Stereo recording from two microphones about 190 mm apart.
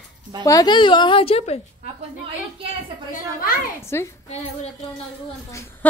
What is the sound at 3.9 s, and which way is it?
Speech, 15° left (ahead or behind).